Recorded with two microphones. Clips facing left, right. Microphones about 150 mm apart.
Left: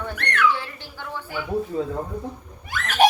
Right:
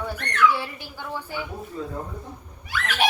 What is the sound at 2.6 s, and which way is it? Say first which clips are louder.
Speech: left 6 dB; 45° left (ahead or behind).